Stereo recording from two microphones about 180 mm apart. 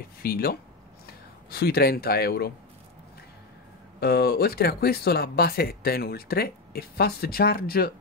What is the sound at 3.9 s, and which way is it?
Speech, 60° left (ahead or behind).